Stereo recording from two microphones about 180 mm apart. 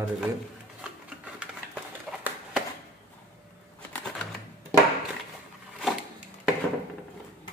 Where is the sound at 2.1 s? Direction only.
Centre (ahead or behind).